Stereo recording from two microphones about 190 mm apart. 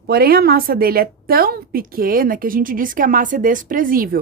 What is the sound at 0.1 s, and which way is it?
A woman's voice, 55° right (ahead or behind).